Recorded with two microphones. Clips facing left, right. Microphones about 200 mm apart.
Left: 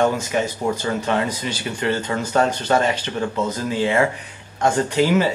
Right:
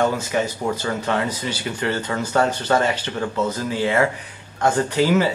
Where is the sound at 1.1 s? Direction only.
20° left (ahead or behind).